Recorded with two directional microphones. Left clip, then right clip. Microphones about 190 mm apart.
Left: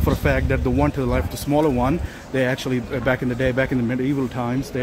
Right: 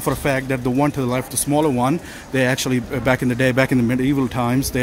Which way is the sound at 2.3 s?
30° right (ahead or behind).